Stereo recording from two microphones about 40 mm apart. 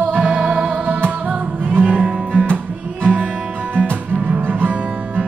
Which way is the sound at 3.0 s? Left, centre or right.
Right.